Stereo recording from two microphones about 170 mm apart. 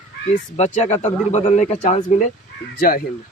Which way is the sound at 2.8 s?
55° left (ahead or behind).